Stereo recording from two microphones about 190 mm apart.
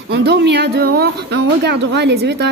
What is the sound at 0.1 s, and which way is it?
Speech, 60° right (ahead or behind).